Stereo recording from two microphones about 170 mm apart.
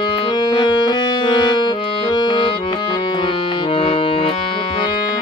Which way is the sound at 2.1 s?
30° left (ahead or behind).